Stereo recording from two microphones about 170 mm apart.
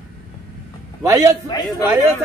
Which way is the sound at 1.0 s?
15° right (ahead or behind).